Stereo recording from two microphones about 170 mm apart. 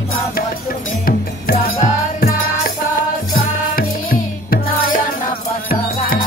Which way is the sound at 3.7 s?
60° left (ahead or behind).